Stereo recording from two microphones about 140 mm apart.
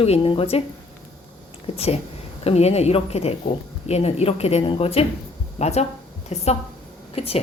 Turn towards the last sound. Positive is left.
turn(degrees=45)  # may be behind; listen again after turning